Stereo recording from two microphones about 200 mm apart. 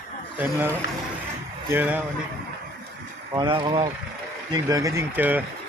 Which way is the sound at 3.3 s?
20° right (ahead or behind).